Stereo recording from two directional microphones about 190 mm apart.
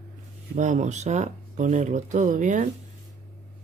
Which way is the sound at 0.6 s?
40° right (ahead or behind).